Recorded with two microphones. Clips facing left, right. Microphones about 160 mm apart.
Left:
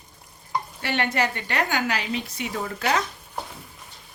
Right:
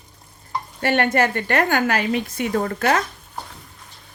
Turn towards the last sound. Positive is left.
turn(degrees=-50)  # may be behind; listen again after turning